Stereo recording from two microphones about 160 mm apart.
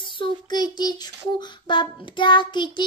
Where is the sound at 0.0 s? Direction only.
30° left (ahead or behind).